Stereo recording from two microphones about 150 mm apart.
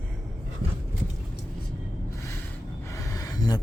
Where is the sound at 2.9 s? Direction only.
20° left (ahead or behind).